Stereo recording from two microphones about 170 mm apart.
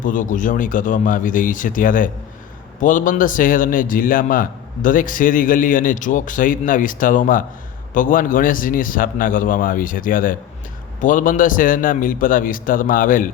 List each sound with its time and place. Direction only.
0.0 s a man's voice: 50° left (ahead or behind)